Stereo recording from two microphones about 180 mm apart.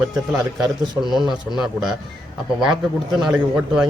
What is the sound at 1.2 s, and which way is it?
Speech, centre (ahead or behind).